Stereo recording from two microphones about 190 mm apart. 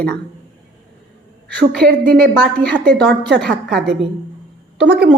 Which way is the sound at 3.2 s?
65° right (ahead or behind).